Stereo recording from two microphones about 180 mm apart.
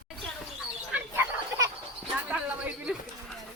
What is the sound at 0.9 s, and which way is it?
Bird, 10° right (ahead or behind).